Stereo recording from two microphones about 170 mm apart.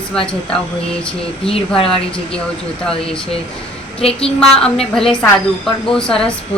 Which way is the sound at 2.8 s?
5° left (ahead or behind).